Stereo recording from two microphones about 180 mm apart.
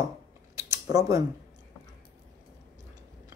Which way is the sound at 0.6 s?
15° right (ahead or behind).